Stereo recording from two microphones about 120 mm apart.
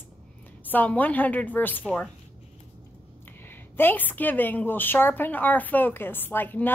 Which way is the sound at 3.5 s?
15° left (ahead or behind).